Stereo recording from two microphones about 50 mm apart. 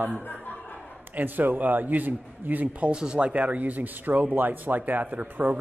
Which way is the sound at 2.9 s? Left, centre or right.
Centre.